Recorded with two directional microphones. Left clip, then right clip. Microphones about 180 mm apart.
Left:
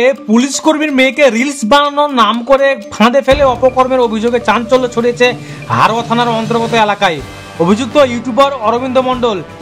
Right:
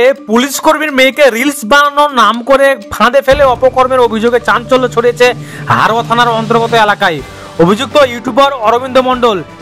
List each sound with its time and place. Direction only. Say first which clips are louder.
0.0 s speech: right 2 dB; 30° right (ahead or behind)